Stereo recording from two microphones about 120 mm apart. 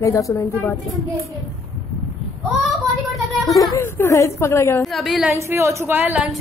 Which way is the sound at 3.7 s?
20° left (ahead or behind).